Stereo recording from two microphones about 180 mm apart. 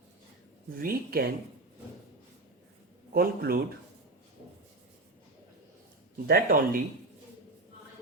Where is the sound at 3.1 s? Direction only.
55° right (ahead or behind).